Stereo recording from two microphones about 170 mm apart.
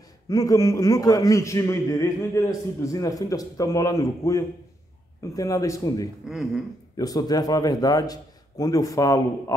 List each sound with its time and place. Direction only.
0.3 s a man's voice: 20° left (ahead or behind)
6.2 s speech: centre (ahead or behind)
7.0 s a man's voice: 20° left (ahead or behind)